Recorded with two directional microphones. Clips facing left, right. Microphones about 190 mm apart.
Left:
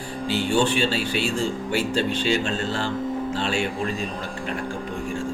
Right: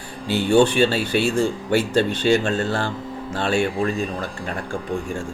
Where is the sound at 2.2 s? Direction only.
50° right (ahead or behind).